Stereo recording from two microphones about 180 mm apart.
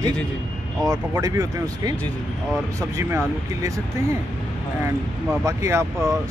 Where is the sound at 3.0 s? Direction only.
15° right (ahead or behind).